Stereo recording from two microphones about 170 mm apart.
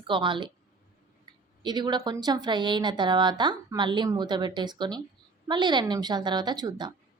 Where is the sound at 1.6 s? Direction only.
25° right (ahead or behind).